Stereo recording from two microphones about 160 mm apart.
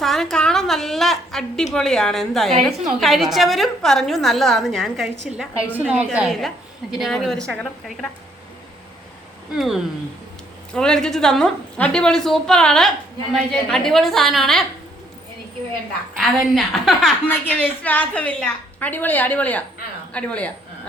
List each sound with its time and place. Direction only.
0.0 s a sound: centre (ahead or behind)
1.7 s a woman's voice: 5° left (ahead or behind)
9.5 s a woman's voice: 5° right (ahead or behind)
16.2 s a woman's voice: centre (ahead or behind)
17.2 s a woman's voice: 10° left (ahead or behind)